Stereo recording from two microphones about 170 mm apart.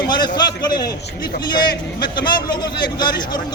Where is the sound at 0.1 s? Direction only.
25° left (ahead or behind).